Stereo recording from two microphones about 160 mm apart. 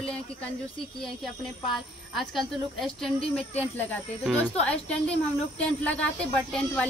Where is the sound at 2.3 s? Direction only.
Centre (ahead or behind).